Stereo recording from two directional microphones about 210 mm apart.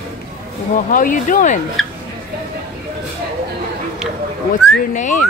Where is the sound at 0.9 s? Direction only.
40° left (ahead or behind).